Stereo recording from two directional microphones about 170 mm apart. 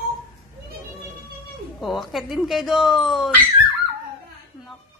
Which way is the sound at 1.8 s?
Centre (ahead or behind).